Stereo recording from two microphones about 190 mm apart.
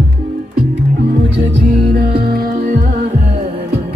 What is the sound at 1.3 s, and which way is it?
Music, 60° right (ahead or behind).